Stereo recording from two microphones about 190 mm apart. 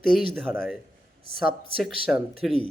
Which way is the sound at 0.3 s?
10° right (ahead or behind).